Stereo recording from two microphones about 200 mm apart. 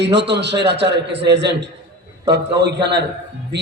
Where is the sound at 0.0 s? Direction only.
60° right (ahead or behind).